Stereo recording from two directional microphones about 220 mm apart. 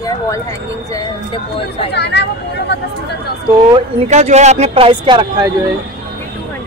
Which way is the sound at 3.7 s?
30° right (ahead or behind).